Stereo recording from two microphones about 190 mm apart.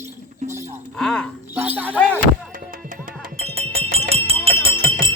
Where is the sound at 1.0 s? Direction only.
5° left (ahead or behind).